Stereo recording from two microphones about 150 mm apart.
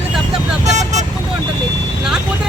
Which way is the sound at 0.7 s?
50° right (ahead or behind).